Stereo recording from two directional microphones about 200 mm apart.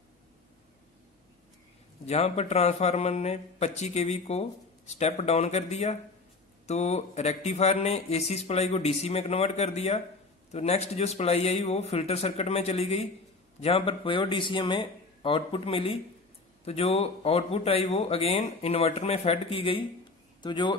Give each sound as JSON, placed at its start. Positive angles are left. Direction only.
{"t": 2.0, "sound": "a man's voice", "side_deg": 35}